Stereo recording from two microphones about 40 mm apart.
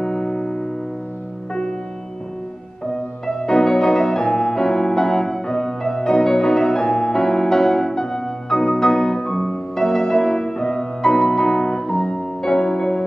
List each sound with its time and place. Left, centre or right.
0.0 s music: centre
3.3 s music: centre